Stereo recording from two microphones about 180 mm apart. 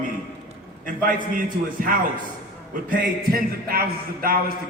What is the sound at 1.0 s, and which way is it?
A man's voice, 50° right (ahead or behind).